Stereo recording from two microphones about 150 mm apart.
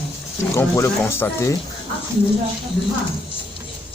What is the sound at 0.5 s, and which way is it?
Speech, 20° left (ahead or behind).